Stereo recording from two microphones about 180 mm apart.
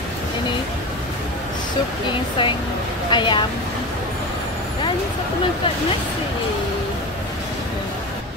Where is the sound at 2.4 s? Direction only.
25° left (ahead or behind).